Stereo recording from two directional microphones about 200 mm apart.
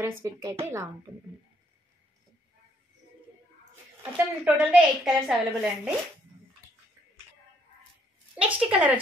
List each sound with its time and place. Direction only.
0.0 s a woman's voice: 15° right (ahead or behind)
4.0 s a woman's voice: 10° right (ahead or behind)
8.4 s a woman's voice: 5° right (ahead or behind)